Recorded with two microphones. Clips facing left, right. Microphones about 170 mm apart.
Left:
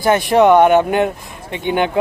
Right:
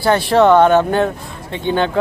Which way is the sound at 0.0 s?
15° left (ahead or behind).